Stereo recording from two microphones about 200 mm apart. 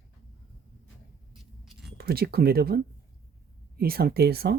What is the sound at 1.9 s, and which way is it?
Speech, 50° right (ahead or behind).